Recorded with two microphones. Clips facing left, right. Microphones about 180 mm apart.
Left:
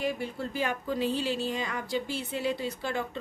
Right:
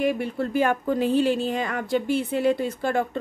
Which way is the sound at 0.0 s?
60° right (ahead or behind).